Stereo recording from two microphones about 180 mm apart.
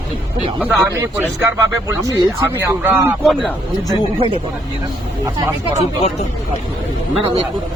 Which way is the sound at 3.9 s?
30° right (ahead or behind).